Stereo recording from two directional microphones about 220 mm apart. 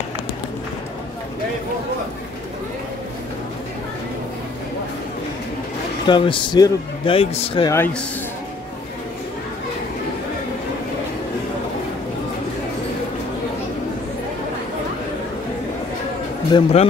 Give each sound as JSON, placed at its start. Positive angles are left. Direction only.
{"t": 6.0, "sound": "a man's voice", "side_deg": 20}
{"t": 16.4, "sound": "a man's voice", "side_deg": 20}